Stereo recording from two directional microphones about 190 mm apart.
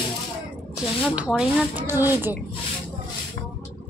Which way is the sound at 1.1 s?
5° right (ahead or behind).